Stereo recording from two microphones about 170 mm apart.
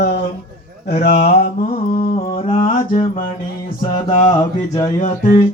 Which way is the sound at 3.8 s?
25° left (ahead or behind).